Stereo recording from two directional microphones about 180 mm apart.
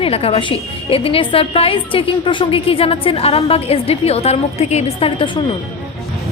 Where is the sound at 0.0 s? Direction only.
30° left (ahead or behind).